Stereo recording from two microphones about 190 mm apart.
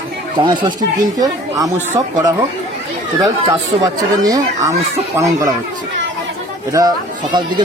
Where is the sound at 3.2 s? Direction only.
20° right (ahead or behind).